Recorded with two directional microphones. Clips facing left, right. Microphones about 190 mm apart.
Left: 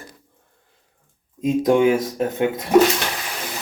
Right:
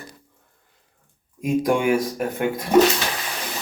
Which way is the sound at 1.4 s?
20° left (ahead or behind).